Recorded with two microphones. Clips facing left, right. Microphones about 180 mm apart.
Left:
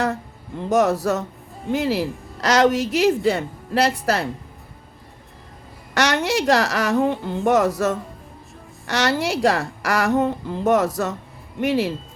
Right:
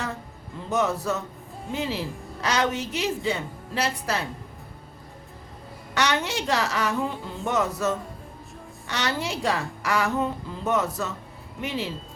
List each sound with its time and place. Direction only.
0.7 s a woman's voice: 80° left
5.9 s a woman's voice: 75° left (ahead or behind)